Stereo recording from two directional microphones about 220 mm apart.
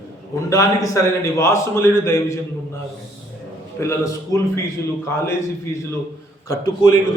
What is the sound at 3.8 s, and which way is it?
Speech, 15° left (ahead or behind).